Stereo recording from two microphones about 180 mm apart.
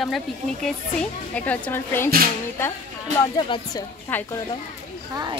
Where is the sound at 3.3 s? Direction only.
25° left (ahead or behind).